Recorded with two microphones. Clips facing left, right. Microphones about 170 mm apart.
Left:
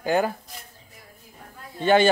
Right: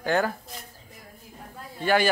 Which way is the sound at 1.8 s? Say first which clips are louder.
Left 4 dB; 25° left (ahead or behind).